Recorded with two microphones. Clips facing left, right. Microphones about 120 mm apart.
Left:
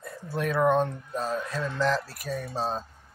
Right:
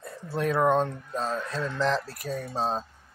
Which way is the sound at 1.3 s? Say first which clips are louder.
Even; 10° left (ahead or behind).